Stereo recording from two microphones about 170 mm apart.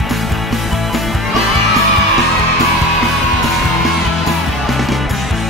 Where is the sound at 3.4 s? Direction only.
Centre (ahead or behind).